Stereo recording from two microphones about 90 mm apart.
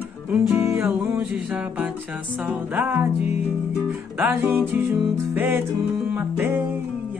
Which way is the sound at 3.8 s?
25° right (ahead or behind).